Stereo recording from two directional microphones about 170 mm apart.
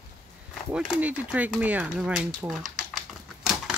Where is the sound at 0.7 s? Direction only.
5° right (ahead or behind).